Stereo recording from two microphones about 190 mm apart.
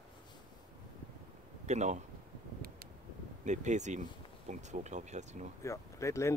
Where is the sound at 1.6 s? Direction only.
40° right (ahead or behind).